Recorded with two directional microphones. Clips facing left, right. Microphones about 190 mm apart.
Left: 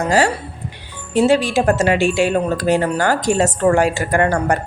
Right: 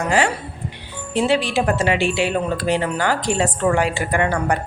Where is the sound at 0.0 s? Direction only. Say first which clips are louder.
Left 3 dB; 40° left (ahead or behind).